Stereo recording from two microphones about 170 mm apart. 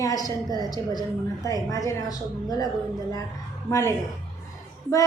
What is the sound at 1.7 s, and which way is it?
Speech, 20° left (ahead or behind).